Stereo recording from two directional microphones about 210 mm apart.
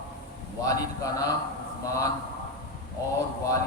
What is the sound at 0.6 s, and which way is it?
Speech, 15° left (ahead or behind).